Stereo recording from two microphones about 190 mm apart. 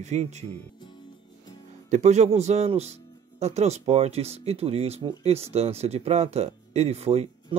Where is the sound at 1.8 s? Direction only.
40° right (ahead or behind).